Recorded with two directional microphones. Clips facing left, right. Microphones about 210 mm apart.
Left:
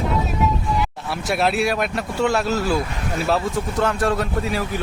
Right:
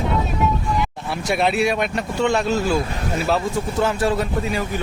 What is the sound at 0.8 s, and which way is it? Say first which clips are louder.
Speech: right 1 dB; centre (ahead or behind).